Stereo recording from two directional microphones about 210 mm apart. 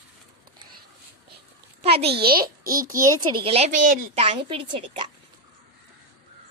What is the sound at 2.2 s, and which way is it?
Speech, 45° right (ahead or behind).